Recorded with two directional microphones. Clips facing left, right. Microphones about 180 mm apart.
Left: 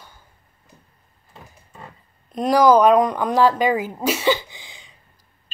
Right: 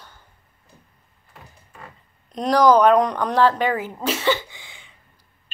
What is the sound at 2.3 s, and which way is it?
A woman's voice, 5° left (ahead or behind).